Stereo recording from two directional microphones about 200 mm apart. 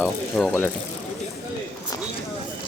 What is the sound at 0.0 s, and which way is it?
Speech, 5° left (ahead or behind).